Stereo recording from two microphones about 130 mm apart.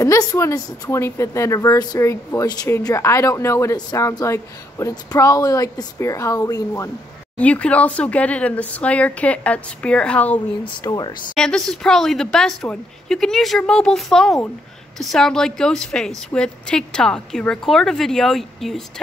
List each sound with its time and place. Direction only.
0.0 s a woman's voice: 25° left (ahead or behind)
7.3 s speech: 10° left (ahead or behind)
10.6 s speech: 30° left (ahead or behind)
11.3 s a woman's voice: 5° left (ahead or behind)